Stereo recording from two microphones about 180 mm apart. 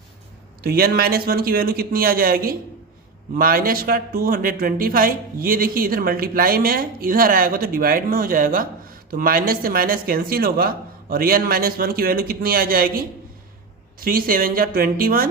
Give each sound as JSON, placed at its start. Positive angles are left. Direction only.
{"t": 0.6, "sound": "a man's voice", "side_deg": -60}